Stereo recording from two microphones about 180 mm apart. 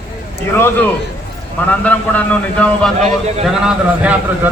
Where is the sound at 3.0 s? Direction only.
40° right (ahead or behind).